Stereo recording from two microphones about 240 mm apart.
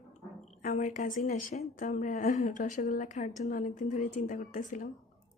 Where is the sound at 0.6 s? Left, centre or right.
Left.